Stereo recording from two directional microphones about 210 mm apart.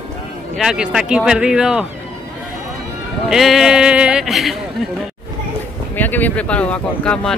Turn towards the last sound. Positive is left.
turn(degrees=5)  # may be behind; listen again after turning